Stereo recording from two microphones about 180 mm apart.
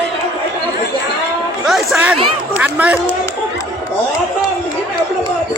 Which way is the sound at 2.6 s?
10° right (ahead or behind).